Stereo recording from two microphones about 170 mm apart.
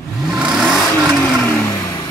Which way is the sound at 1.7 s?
20° left (ahead or behind).